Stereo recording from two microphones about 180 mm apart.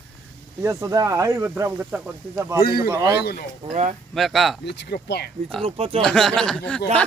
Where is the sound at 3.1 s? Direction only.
60° left (ahead or behind).